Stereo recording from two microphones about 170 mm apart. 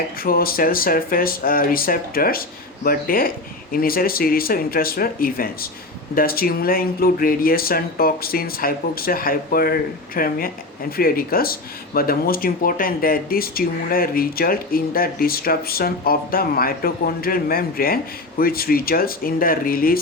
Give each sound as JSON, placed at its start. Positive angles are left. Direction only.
{"t": 0.2, "sound": "speech", "side_deg": 60}